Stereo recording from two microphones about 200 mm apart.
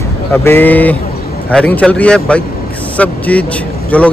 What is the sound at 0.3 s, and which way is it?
A man's voice, 10° left (ahead or behind).